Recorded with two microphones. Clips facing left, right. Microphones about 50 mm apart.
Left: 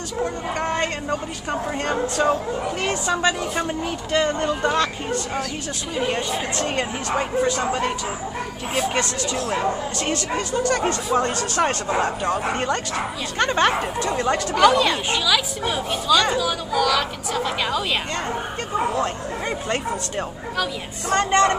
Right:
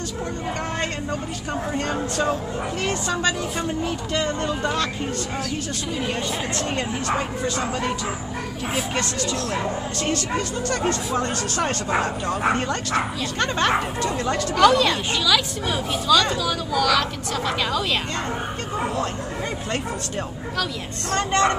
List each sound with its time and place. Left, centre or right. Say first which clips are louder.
0.2 s a woman's voice: left 5 dB; left
5.9 s a woman's voice: left 4 dB; centre
8.9 s a woman's voice: left 1 dB; centre
10.7 s speech: left 1 dB; left
13.4 s speech: left 2 dB; centre
14.5 s a woman's voice: even; centre
19.7 s a woman's voice: left 2 dB; centre